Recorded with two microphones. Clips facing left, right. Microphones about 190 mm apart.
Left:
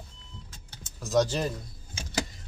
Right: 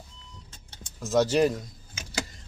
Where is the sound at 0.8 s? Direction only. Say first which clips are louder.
Right 1 dB; centre (ahead or behind).